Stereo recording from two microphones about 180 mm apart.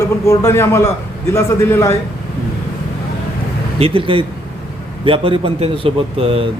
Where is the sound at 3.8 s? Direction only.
30° right (ahead or behind).